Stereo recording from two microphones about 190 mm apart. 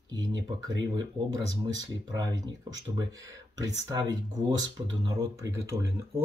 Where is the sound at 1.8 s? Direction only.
20° right (ahead or behind).